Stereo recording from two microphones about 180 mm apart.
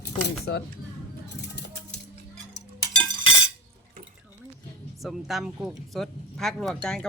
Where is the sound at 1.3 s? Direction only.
70° left (ahead or behind).